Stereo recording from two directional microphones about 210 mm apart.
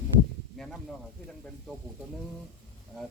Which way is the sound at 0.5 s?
Centre (ahead or behind).